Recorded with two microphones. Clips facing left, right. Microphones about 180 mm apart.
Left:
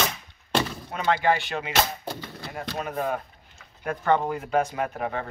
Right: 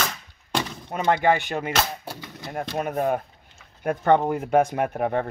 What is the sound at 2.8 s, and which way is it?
Speech, 55° right (ahead or behind).